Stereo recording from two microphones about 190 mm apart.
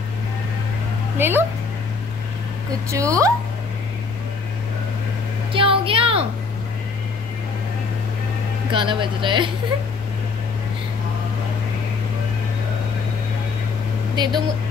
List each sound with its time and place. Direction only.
1.1 s speech: 10° right (ahead or behind)
2.9 s speech: 15° right (ahead or behind)
5.5 s a sound: 25° right (ahead or behind)
8.7 s speech: 25° right (ahead or behind)
14.1 s speech: 20° right (ahead or behind)